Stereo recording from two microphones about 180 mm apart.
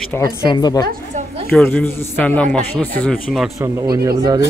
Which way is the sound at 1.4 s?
10° left (ahead or behind).